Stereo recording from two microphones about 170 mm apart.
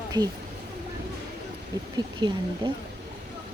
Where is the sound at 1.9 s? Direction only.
25° right (ahead or behind).